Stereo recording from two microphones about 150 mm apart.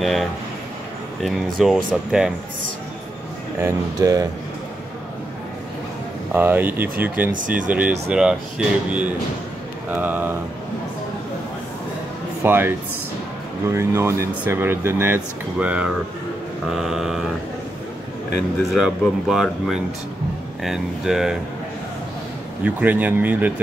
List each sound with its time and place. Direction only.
0.0 s speech: centre (ahead or behind)
3.6 s speech: 20° right (ahead or behind)
6.3 s speech: 10° right (ahead or behind)
12.4 s speech: 15° right (ahead or behind)
18.6 s speech: centre (ahead or behind)
22.6 s speech: 10° right (ahead or behind)